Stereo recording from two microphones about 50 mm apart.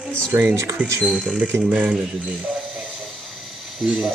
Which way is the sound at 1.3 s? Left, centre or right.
Right.